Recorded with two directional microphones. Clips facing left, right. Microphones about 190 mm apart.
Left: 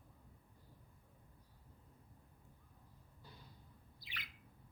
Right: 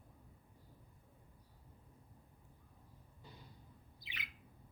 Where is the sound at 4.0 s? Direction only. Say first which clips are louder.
Right 2 dB; 20° right (ahead or behind).